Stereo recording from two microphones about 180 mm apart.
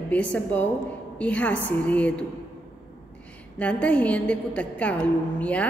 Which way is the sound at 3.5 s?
5° left (ahead or behind).